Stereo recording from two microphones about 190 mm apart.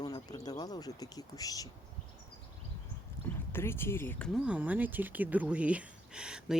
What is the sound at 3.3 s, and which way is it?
Speech, 10° left (ahead or behind).